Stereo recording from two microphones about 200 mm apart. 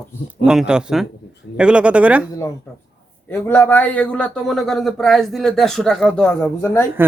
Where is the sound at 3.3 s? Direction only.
10° left (ahead or behind).